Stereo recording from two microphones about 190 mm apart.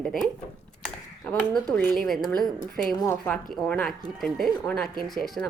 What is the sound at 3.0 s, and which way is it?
Speech, 15° left (ahead or behind).